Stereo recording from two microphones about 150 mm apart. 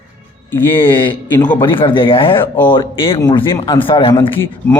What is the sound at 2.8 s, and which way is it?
A man's voice, 35° left (ahead or behind).